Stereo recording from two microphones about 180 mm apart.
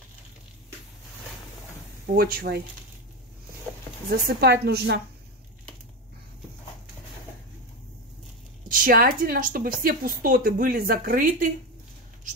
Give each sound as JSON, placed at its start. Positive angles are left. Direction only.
{"t": 2.1, "sound": "a woman's voice", "side_deg": -55}
{"t": 4.1, "sound": "a woman's voice", "side_deg": -60}
{"t": 8.6, "sound": "a woman's voice", "side_deg": -50}